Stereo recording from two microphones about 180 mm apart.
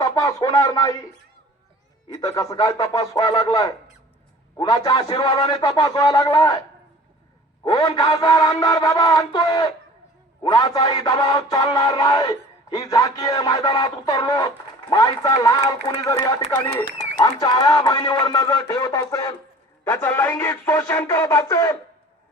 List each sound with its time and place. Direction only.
0.0 s speech: 20° left (ahead or behind)
2.2 s music: 20° left (ahead or behind)
7.6 s music: 20° left (ahead or behind)
16.5 s speech: 15° left (ahead or behind)
17.2 s music: 20° left (ahead or behind)
19.9 s speech: 10° left (ahead or behind)